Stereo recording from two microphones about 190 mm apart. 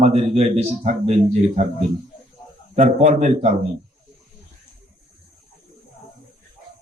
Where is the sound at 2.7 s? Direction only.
35° right (ahead or behind).